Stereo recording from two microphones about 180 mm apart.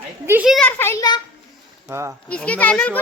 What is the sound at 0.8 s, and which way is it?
Speech, 15° left (ahead or behind).